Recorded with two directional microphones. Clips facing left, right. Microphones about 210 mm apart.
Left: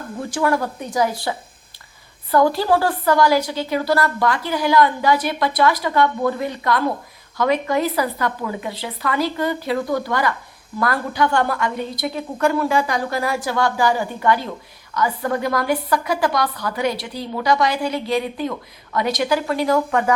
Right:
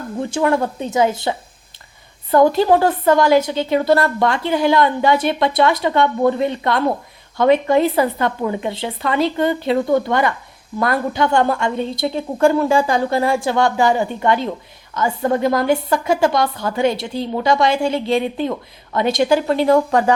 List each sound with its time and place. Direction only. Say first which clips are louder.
0.2 s a woman's voice: right 3 dB; 25° right (ahead or behind)